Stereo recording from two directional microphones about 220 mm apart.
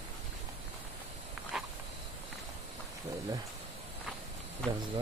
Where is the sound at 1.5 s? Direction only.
Centre (ahead or behind).